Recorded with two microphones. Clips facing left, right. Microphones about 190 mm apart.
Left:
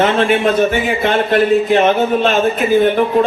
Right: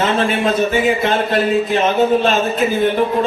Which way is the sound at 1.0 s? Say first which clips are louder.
Left 3 dB; 55° left (ahead or behind).